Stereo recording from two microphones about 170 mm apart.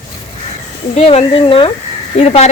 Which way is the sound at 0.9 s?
40° left (ahead or behind).